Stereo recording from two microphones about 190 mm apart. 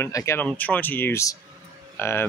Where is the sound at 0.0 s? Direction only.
15° left (ahead or behind).